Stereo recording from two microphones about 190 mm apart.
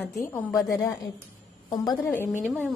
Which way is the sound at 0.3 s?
15° left (ahead or behind).